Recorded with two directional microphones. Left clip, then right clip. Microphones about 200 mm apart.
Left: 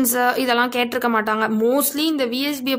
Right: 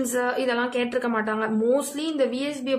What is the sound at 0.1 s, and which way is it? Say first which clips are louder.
A woman's voice: left 5 dB; 60° left (ahead or behind).